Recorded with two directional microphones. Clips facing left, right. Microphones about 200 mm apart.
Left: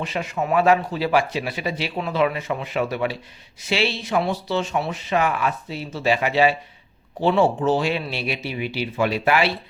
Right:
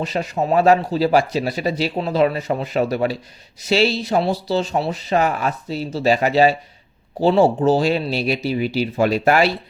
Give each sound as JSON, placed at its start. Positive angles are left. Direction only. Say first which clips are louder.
{"t": 0.0, "sound": "speech", "louder": "right 4 dB", "side_deg": -40}